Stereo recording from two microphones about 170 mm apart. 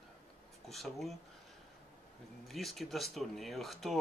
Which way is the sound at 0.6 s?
Centre (ahead or behind).